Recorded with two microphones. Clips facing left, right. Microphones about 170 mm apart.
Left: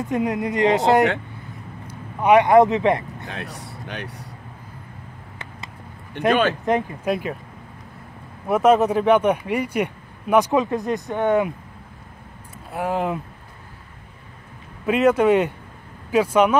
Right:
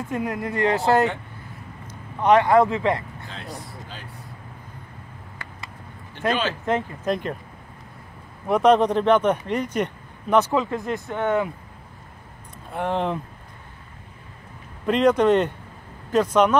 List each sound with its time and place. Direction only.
0.0 s speech: 20° left (ahead or behind)
3.3 s speech: 65° left (ahead or behind)
6.2 s speech: 60° left (ahead or behind)
6.6 s speech: 10° left (ahead or behind)
8.5 s speech: 5° left (ahead or behind)
12.7 s speech: 5° left (ahead or behind)
14.9 s speech: 5° left (ahead or behind)